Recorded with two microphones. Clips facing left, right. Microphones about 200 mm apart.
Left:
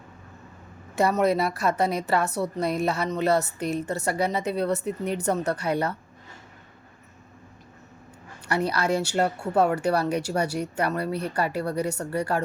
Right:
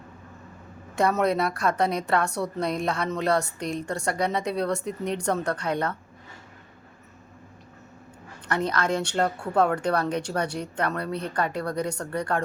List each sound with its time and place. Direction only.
0.9 s a woman's voice: 5° left (ahead or behind)
8.4 s speech: 10° left (ahead or behind)